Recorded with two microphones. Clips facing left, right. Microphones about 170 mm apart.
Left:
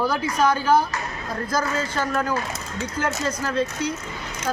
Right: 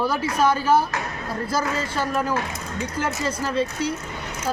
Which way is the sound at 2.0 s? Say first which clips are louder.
Right 1 dB; 5° right (ahead or behind).